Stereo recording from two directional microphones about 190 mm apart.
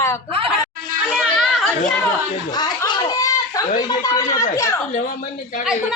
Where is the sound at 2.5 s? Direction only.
20° left (ahead or behind).